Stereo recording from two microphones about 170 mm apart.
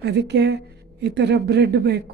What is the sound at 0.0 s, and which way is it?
A woman's voice, 80° right.